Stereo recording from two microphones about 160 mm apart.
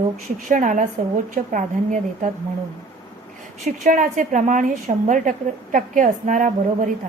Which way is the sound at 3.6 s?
50° right (ahead or behind).